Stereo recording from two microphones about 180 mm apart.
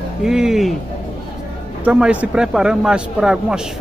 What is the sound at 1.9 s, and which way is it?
Speech, 5° right (ahead or behind).